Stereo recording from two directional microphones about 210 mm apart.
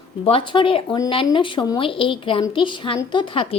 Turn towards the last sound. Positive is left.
turn(degrees=25)  # may be behind; listen again after turning